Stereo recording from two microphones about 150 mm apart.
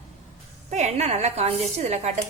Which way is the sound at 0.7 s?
50° right (ahead or behind).